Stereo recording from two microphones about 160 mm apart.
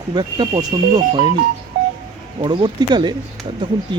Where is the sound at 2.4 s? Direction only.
30° right (ahead or behind).